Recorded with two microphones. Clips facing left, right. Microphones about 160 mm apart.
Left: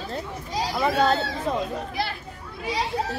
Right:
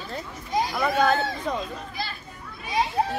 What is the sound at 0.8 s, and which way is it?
Speech, 30° left (ahead or behind).